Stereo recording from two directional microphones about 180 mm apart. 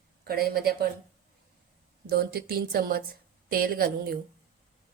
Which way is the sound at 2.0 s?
60° right (ahead or behind).